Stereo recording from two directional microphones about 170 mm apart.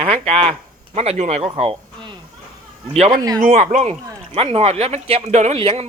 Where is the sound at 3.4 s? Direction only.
50° right (ahead or behind).